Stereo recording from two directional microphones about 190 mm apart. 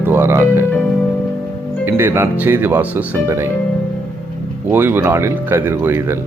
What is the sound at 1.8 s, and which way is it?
Speech, 10° right (ahead or behind).